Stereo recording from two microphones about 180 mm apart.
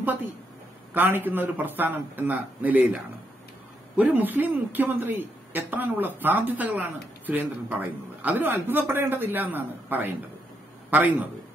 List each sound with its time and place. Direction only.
0.0 s speech: 10° right (ahead or behind)
8.2 s speech: 10° right (ahead or behind)